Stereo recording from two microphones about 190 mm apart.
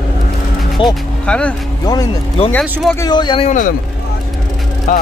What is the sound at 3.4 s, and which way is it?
Speech, 40° left (ahead or behind).